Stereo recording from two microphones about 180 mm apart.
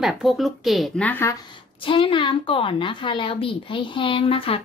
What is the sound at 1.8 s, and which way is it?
A woman's voice, 30° left (ahead or behind).